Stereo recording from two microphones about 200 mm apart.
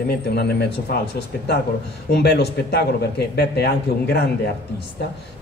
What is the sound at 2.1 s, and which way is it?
A man's voice, 55° left (ahead or behind).